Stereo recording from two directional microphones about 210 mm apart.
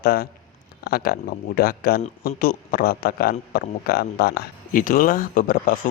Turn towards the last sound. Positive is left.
turn(degrees=40)  # may be behind; listen again after turning